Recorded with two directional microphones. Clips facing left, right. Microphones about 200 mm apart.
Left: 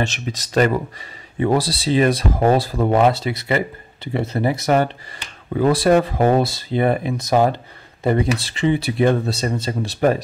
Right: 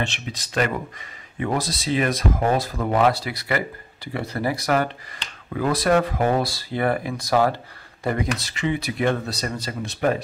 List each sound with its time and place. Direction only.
0.0 s speech: 40° left (ahead or behind)